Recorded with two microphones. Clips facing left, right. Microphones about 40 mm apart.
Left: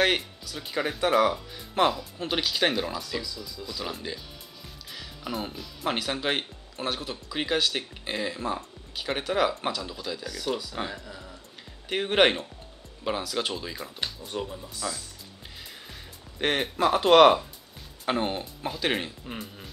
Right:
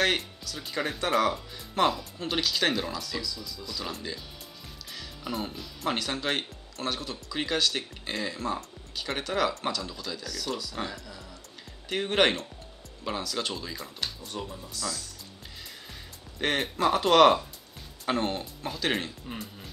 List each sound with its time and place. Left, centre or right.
0.0 s speech: centre
4.9 s music: centre
5.9 s speech: centre
16.3 s speech: centre